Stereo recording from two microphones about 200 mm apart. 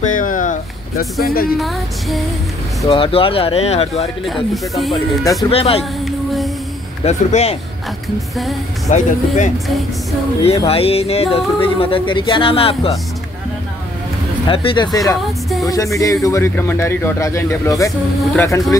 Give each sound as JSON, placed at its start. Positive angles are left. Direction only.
{"t": 0.0, "sound": "a sound", "side_deg": 40}
{"t": 1.2, "sound": "speech", "side_deg": 50}
{"t": 1.6, "sound": "speech", "side_deg": 0}
{"t": 2.9, "sound": "music", "side_deg": 25}
{"t": 4.3, "sound": "speech", "side_deg": 0}
{"t": 5.2, "sound": "speech", "side_deg": 15}
{"t": 5.5, "sound": "music", "side_deg": 30}
{"t": 6.0, "sound": "a sound", "side_deg": 0}
{"t": 7.1, "sound": "speech", "side_deg": 35}
{"t": 8.9, "sound": "speech", "side_deg": 40}
{"t": 11.3, "sound": "music", "side_deg": 25}
{"t": 14.5, "sound": "music", "side_deg": 25}
{"t": 15.6, "sound": "speech", "side_deg": 15}